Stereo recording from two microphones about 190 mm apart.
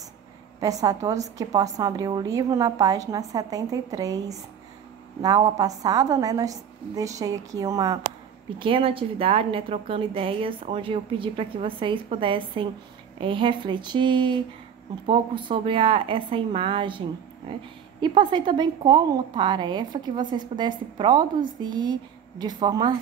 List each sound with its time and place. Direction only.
0.6 s a woman's voice: 20° right (ahead or behind)